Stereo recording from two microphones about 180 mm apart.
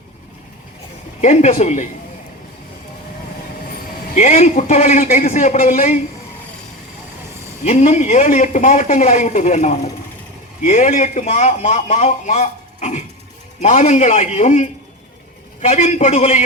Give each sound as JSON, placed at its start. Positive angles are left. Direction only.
{"t": 1.2, "sound": "a man's voice", "side_deg": 40}
{"t": 4.1, "sound": "a man's voice", "side_deg": 40}
{"t": 7.6, "sound": "a man's voice", "side_deg": 40}